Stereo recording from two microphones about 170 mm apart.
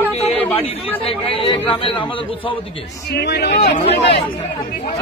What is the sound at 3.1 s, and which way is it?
Speech, 80° left.